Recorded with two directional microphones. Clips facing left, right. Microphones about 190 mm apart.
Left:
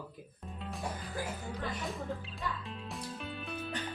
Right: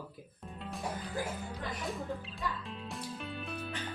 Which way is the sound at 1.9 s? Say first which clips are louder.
Even; centre (ahead or behind).